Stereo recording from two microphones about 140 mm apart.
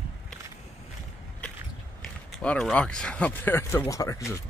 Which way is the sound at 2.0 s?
5° left (ahead or behind).